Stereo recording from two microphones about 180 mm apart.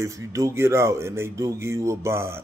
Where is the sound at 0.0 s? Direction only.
15° right (ahead or behind).